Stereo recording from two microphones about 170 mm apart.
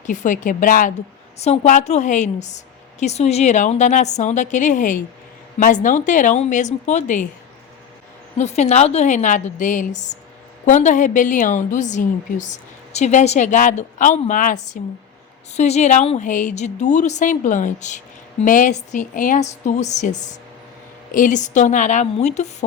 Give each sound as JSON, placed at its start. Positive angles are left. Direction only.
{"t": 0.0, "sound": "a woman's voice", "side_deg": 45}
{"t": 8.4, "sound": "a woman's voice", "side_deg": 40}